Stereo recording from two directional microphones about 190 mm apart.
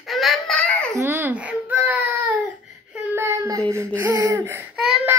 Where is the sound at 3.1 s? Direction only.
15° right (ahead or behind).